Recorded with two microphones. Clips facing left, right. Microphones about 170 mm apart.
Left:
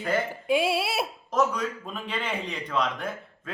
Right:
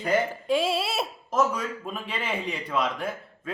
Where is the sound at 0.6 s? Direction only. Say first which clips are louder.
Even; 5° left (ahead or behind).